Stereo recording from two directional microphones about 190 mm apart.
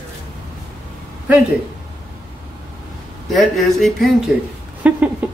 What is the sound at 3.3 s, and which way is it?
Speech, centre (ahead or behind).